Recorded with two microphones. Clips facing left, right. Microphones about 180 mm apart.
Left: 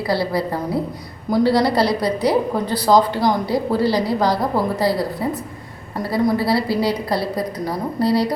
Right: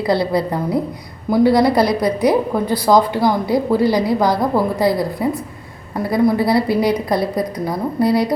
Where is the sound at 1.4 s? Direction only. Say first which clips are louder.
Right 4 dB; 15° right (ahead or behind).